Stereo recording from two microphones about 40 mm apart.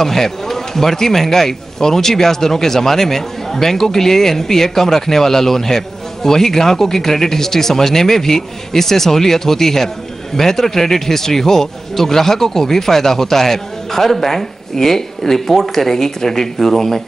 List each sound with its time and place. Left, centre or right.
0.0 s a man's voice: centre